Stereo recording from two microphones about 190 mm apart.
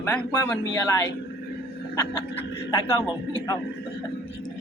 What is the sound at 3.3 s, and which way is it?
Speech, 15° left (ahead or behind).